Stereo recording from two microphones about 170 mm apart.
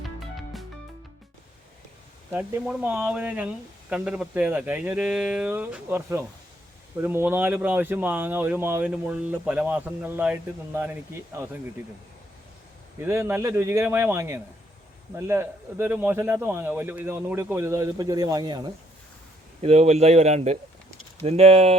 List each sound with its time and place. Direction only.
0.2 s music: centre (ahead or behind)
2.3 s speech: 10° right (ahead or behind)
13.0 s speech: 15° right (ahead or behind)
19.6 s speech: 40° right (ahead or behind)